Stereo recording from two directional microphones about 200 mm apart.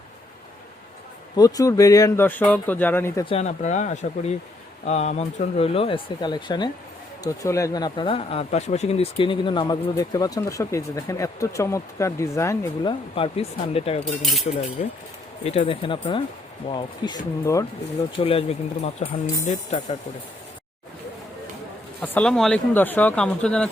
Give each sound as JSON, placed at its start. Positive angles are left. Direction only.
{"t": 1.4, "sound": "speech", "side_deg": 15}
{"t": 3.2, "sound": "speech", "side_deg": 35}
{"t": 14.0, "sound": "speech", "side_deg": 0}
{"t": 14.8, "sound": "speech", "side_deg": 40}
{"t": 15.4, "sound": "speech", "side_deg": 30}
{"t": 18.2, "sound": "speech", "side_deg": 30}
{"t": 22.0, "sound": "speech", "side_deg": 5}